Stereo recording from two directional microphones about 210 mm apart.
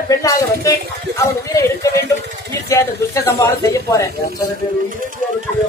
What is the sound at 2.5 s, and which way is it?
Speech, 15° left (ahead or behind).